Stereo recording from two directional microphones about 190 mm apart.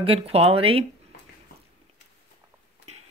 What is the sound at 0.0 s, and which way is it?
Speech, 30° right (ahead or behind).